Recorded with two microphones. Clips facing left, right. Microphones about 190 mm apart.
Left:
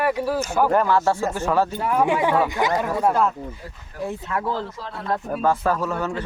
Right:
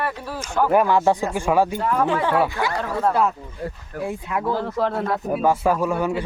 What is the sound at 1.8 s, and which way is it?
Speech, 10° left (ahead or behind).